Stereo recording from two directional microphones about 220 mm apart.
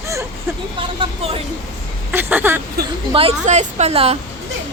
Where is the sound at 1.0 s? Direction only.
25° right (ahead or behind).